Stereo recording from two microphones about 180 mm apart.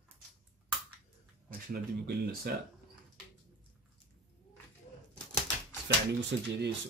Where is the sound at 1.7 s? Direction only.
60° right (ahead or behind).